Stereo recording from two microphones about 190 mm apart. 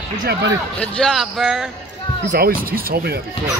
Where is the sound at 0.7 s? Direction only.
5° left (ahead or behind).